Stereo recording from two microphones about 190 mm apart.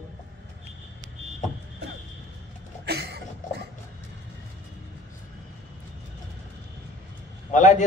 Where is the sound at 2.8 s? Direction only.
60° right (ahead or behind).